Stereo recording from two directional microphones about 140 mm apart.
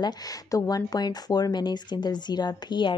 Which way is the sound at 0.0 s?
25° left (ahead or behind).